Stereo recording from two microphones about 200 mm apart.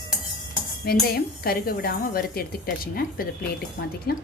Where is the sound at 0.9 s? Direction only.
50° left (ahead or behind).